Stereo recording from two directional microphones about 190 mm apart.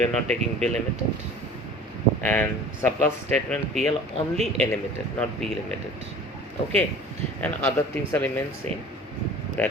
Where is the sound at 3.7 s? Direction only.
35° right (ahead or behind).